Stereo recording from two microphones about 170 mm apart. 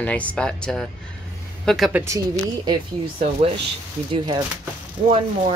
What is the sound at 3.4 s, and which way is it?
Speech, 40° right (ahead or behind).